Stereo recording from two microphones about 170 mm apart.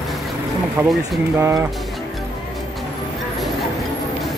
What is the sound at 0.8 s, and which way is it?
Speech, 10° right (ahead or behind).